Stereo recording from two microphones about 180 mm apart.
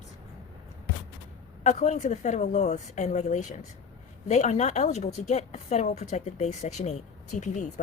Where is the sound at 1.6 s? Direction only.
40° left (ahead or behind).